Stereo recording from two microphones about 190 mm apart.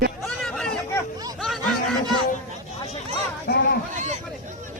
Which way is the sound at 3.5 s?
60° left (ahead or behind).